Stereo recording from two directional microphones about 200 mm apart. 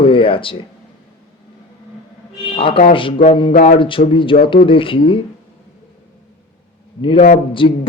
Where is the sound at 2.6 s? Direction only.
30° left (ahead or behind).